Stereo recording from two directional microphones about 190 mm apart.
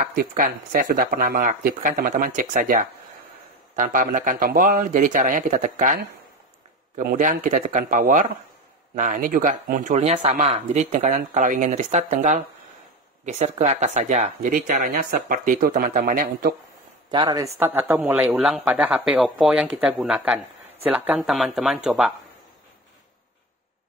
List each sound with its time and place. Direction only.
0.0 s speech: 50° right (ahead or behind)
7.0 s speech: 45° right (ahead or behind)
17.1 s speech: 20° right (ahead or behind)
17.6 s speech: 10° right (ahead or behind)